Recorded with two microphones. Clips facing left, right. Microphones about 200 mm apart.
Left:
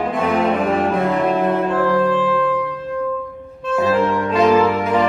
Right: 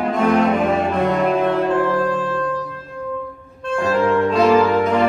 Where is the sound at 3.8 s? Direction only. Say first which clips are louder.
Right 2 dB; centre (ahead or behind).